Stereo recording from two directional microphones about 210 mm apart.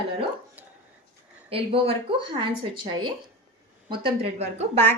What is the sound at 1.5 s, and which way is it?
Speech, 25° right (ahead or behind).